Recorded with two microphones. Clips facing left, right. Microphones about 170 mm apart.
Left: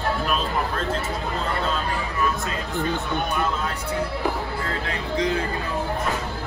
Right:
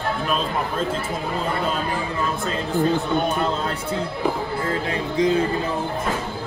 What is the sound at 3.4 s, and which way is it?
Speech, 30° right (ahead or behind).